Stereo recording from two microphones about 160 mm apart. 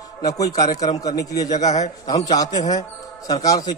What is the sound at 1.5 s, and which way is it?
Speech, 45° left (ahead or behind).